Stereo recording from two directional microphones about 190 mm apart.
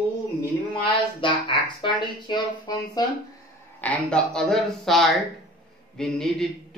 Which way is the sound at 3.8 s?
5° left (ahead or behind).